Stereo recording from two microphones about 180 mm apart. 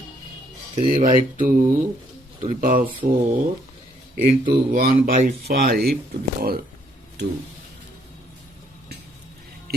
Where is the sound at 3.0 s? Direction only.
55° right (ahead or behind).